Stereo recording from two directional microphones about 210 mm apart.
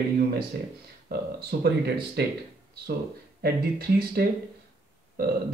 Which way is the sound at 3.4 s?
45° right (ahead or behind).